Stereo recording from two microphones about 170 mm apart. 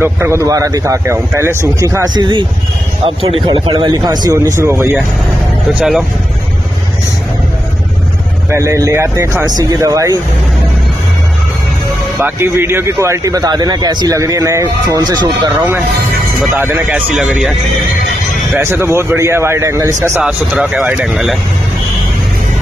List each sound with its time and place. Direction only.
0.0 s a man's voice: 15° right (ahead or behind)
5.8 s speech: 5° right (ahead or behind)
8.5 s a man's voice: 15° right (ahead or behind)
12.2 s speech: 15° right (ahead or behind)
16.5 s speech: 10° right (ahead or behind)
18.6 s a man's voice: 15° right (ahead or behind)
20.2 s speech: 5° right (ahead or behind)